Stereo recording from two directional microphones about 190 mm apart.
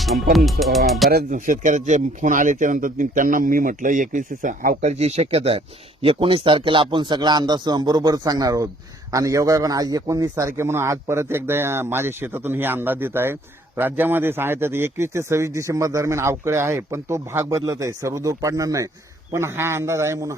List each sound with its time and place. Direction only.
0.9 s speech: centre (ahead or behind)
1.1 s a man's voice: 45° right (ahead or behind); by 20.3 s 15° right (ahead or behind)